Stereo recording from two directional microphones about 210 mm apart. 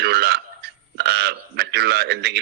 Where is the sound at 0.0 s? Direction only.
50° right (ahead or behind).